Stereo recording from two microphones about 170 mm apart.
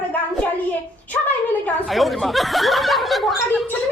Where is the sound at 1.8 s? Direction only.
Centre (ahead or behind).